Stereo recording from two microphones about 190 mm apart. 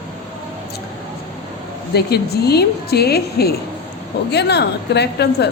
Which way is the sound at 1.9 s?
60° left (ahead or behind).